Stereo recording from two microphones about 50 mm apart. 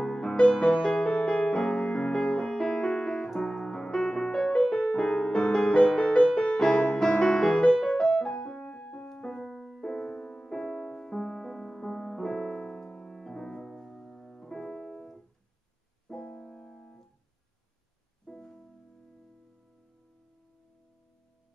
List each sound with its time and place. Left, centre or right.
0.0 s music: centre; by 9.1 s left
9.1 s music: centre
9.4 s music: centre
9.8 s music: centre
16.1 s keyboard: centre
18.2 s music: centre